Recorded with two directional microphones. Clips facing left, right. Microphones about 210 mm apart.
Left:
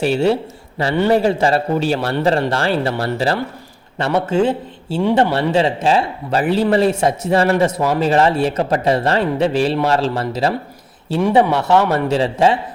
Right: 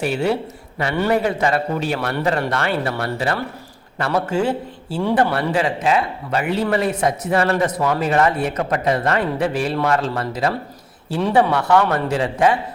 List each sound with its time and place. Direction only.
0.0 s a man's voice: 30° left (ahead or behind)
11.2 s a man's voice: 15° left (ahead or behind)